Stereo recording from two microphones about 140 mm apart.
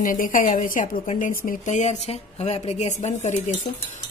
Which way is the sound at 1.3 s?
75° left (ahead or behind).